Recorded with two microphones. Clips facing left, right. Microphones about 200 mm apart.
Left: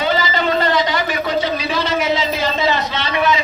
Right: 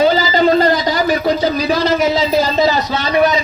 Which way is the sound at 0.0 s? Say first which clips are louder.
Right 6 dB; 35° right (ahead or behind).